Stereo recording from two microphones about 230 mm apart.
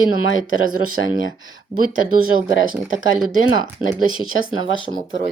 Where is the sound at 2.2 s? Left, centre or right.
Left.